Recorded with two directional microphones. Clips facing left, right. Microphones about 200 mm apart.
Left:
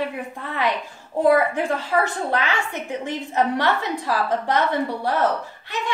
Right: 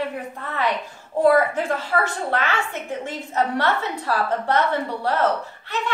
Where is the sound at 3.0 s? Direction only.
15° left (ahead or behind).